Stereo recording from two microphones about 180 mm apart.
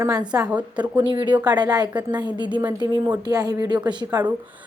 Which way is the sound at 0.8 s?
25° right (ahead or behind).